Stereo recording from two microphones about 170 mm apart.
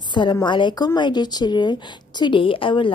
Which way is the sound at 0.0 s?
25° left (ahead or behind).